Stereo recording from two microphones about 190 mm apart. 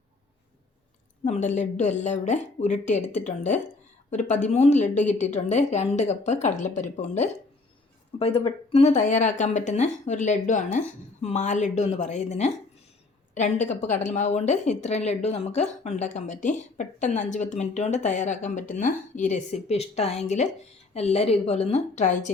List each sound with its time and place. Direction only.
1.2 s a woman's voice: 40° left (ahead or behind)